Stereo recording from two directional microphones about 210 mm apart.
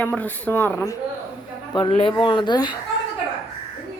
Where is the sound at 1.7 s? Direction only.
25° left (ahead or behind).